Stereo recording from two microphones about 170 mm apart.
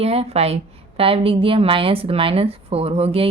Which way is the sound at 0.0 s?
35° right (ahead or behind).